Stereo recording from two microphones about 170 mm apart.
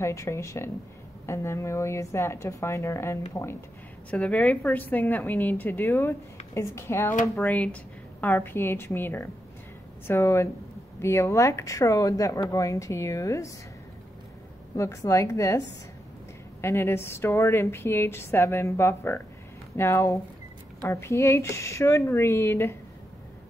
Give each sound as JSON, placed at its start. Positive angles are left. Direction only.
{"t": 0.0, "sound": "a woman's voice", "side_deg": 15}
{"t": 14.8, "sound": "a woman's voice", "side_deg": 20}
{"t": 16.6, "sound": "a woman's voice", "side_deg": 15}